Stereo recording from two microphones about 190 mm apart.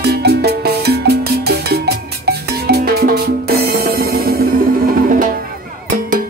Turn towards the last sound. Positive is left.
turn(degrees=-45)  # may be behind; listen again after turning